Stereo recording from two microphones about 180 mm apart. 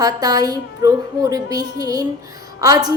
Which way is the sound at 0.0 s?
20° right (ahead or behind).